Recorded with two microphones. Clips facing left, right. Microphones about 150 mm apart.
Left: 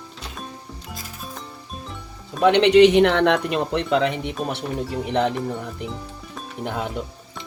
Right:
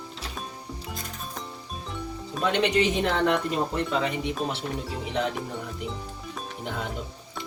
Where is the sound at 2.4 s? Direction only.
70° left (ahead or behind).